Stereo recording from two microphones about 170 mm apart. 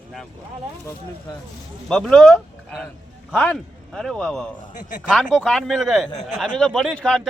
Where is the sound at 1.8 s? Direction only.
5° left (ahead or behind).